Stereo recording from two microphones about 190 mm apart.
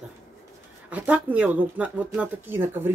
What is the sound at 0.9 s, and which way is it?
Speech, 10° right (ahead or behind).